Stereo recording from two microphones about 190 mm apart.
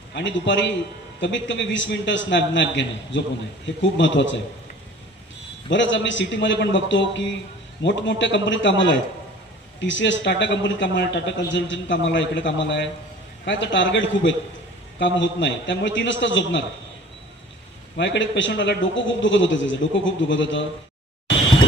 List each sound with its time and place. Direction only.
0.1 s a man's voice: 70° left (ahead or behind)
5.7 s a man's voice: 75° left (ahead or behind)
17.9 s a man's voice: 70° left (ahead or behind)